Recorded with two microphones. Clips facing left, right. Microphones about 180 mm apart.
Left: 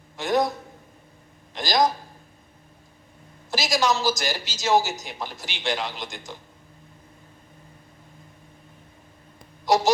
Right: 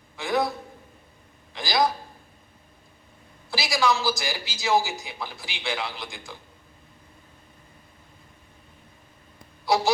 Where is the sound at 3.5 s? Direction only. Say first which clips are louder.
Left 3 dB; 40° left (ahead or behind).